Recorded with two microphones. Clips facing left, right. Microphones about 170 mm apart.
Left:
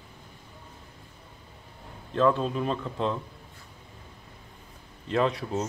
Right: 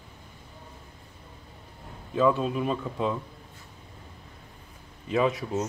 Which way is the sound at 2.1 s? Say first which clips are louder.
Even; 5° right (ahead or behind).